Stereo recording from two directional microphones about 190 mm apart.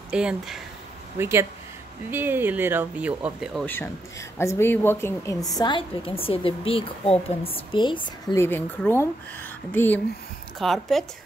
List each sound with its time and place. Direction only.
0.1 s a woman's voice: 5° right (ahead or behind)
3.6 s a woman's voice: 10° left (ahead or behind)
8.4 s a woman's voice: 10° left (ahead or behind)